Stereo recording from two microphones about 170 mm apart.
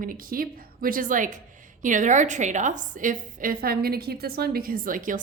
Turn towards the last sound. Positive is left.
turn(degrees=-50)  # may be behind; listen again after turning